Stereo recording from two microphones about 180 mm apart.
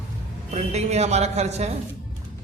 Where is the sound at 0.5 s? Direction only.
40° right (ahead or behind).